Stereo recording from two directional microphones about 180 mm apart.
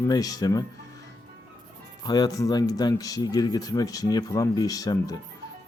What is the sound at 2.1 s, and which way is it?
Speech, 20° left (ahead or behind).